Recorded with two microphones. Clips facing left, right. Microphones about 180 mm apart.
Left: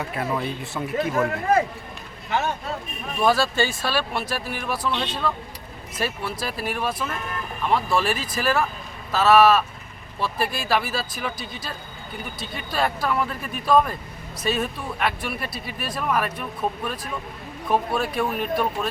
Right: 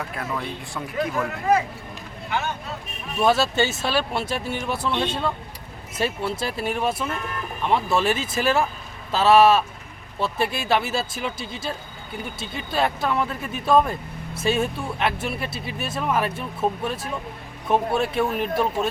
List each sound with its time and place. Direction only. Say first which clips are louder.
0.0 s speech: left 3 dB; 5° left (ahead or behind)
3.2 s speech: right 1 dB; 25° right (ahead or behind)